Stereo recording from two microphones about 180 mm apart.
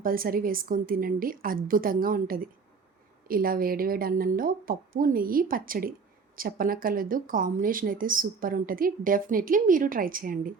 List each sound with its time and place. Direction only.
0.0 s speech: 55° right (ahead or behind)